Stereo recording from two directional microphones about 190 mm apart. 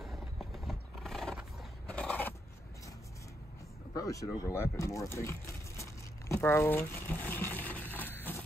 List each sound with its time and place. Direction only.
0.0 s a sound: centre (ahead or behind)
3.9 s speech: 15° left (ahead or behind)
5.8 s crumpling: 15° left (ahead or behind)